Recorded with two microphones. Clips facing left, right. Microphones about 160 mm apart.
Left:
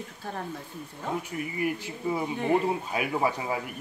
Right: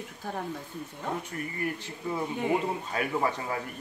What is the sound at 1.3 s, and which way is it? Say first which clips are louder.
Speech: left 3 dB; 10° left (ahead or behind).